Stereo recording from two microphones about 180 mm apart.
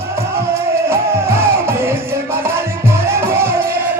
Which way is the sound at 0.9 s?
15° right (ahead or behind).